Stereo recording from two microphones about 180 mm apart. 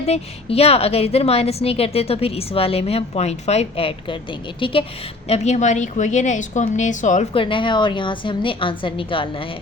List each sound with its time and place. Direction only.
0.0 s a woman's voice: 35° left (ahead or behind)
5.3 s a woman's voice: 40° left (ahead or behind)
7.3 s a woman's voice: 30° left (ahead or behind)